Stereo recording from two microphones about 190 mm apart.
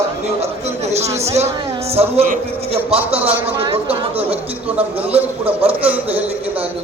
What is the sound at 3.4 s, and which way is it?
Speech, 30° right (ahead or behind).